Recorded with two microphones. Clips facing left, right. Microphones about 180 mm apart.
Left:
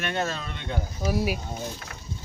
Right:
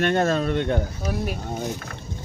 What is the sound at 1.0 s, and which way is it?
Speech, 10° left (ahead or behind).